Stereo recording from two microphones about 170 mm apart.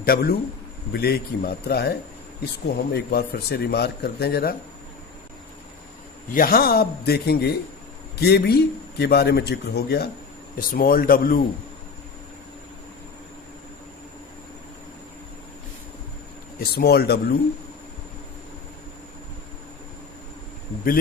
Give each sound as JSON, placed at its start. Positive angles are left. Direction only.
{"t": 0.0, "sound": "a man's voice", "side_deg": 60}
{"t": 6.3, "sound": "a man's voice", "side_deg": 60}
{"t": 10.6, "sound": "a man's voice", "side_deg": 60}
{"t": 16.6, "sound": "a man's voice", "side_deg": 65}